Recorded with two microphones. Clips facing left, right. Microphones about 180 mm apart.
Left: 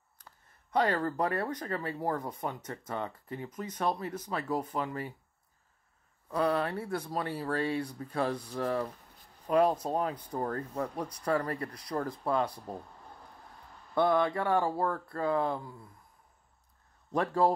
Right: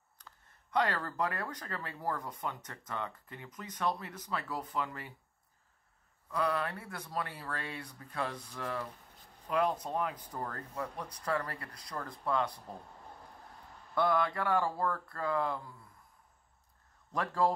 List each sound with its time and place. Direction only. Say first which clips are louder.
0.7 s speech: left 4 dB; 25° left (ahead or behind)
6.3 s speech: left 4 dB; 35° left (ahead or behind)
13.9 s speech: left 4 dB; 25° left (ahead or behind)
17.1 s speech: left 4 dB; 25° left (ahead or behind)